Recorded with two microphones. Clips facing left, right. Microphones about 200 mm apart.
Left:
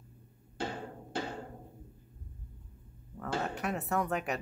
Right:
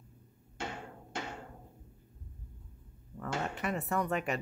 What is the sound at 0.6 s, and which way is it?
Music, 35° left (ahead or behind).